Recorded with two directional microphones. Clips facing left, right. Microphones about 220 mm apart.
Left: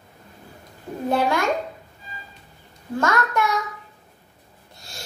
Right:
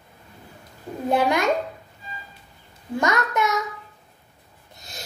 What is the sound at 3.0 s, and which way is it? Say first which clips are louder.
Speech: left 1 dB; 20° right (ahead or behind).